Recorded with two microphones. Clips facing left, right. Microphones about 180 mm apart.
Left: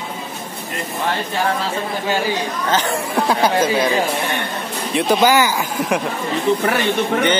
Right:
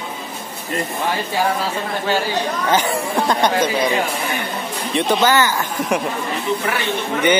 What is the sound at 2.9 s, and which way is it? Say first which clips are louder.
Speech: even; 5° left (ahead or behind).